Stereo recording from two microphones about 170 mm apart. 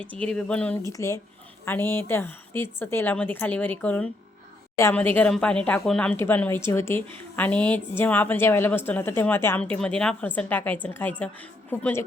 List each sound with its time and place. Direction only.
0.0 s a woman's voice: 10° left (ahead or behind)
0.9 s a woman's voice: 15° left (ahead or behind)